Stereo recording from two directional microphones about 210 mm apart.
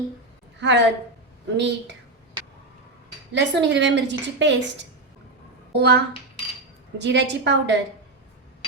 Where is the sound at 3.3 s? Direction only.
55° right (ahead or behind).